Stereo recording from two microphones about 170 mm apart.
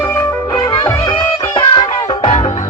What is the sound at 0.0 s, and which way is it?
Music, 15° left (ahead or behind).